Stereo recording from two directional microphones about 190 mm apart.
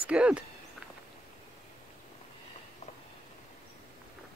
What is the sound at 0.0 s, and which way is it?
Speech, 5° right (ahead or behind).